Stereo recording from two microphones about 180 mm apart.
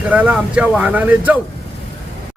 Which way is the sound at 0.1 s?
10° right (ahead or behind).